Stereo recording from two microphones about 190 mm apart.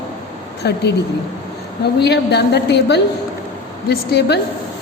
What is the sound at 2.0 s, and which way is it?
A woman's voice, 60° left (ahead or behind).